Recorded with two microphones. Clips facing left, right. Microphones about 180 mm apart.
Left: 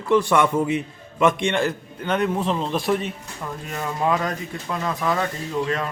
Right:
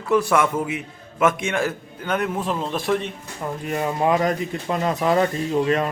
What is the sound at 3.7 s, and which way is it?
Speech, 25° right (ahead or behind).